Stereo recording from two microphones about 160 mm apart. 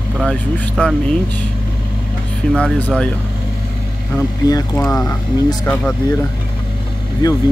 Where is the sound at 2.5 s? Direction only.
5° left (ahead or behind).